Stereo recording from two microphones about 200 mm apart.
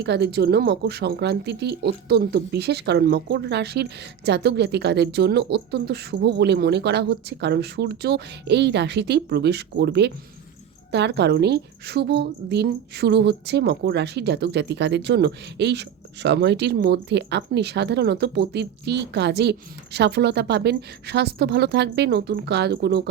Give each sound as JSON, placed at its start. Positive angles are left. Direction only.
{"t": 0.0, "sound": "a woman's voice", "side_deg": -55}